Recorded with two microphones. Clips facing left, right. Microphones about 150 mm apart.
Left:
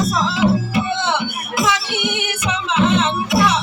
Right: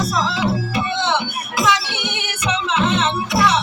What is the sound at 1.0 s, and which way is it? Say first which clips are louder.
Music: even; 25° right (ahead or behind).